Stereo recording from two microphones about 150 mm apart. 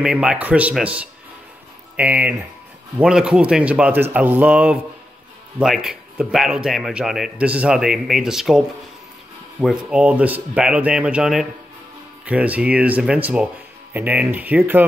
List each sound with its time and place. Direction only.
0.0 s speech: 5° right (ahead or behind)